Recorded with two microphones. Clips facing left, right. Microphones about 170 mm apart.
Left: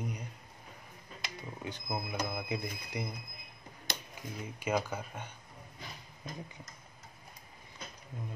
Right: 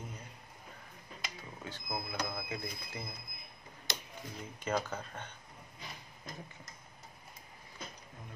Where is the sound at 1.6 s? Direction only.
15° left (ahead or behind).